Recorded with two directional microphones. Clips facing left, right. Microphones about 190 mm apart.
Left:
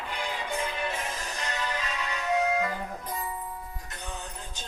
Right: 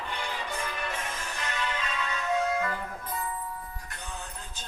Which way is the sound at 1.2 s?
40° left (ahead or behind).